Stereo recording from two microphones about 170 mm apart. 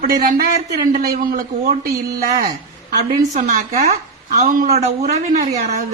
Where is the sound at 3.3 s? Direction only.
45° right (ahead or behind).